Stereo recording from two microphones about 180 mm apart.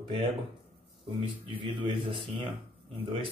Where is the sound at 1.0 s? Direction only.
30° right (ahead or behind).